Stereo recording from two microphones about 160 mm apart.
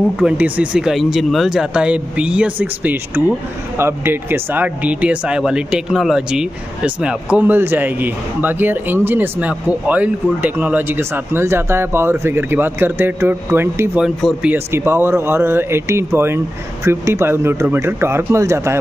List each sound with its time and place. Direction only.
0.2 s speech: 5° right (ahead or behind)
14.0 s speech: 5° right (ahead or behind)